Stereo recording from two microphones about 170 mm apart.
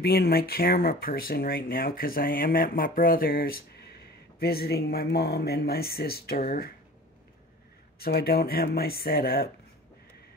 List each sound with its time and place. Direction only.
0.0 s speech: 65° left (ahead or behind)
8.0 s speech: 65° left (ahead or behind)